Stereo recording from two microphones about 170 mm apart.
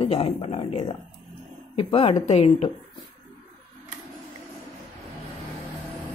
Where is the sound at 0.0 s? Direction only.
35° left (ahead or behind).